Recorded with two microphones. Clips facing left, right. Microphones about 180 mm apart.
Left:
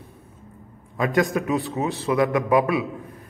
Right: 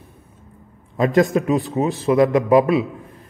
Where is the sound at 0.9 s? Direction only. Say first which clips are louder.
Right 5 dB; 30° right (ahead or behind).